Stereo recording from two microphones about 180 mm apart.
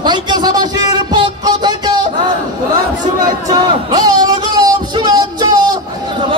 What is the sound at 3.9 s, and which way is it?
Music, 25° right (ahead or behind).